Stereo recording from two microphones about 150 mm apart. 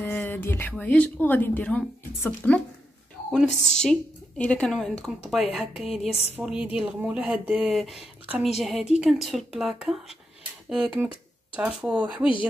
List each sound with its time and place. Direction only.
0.0 s a woman's voice: 10° left (ahead or behind); by 5.9 s 5° right (ahead or behind)
6.0 s a sound: 45° left (ahead or behind)
6.3 s a woman's voice: 5° right (ahead or behind)